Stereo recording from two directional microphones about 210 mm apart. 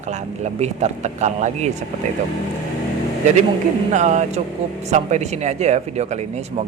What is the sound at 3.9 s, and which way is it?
Speech, 35° right (ahead or behind).